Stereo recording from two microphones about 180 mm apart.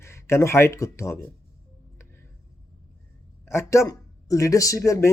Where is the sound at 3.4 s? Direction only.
15° left (ahead or behind).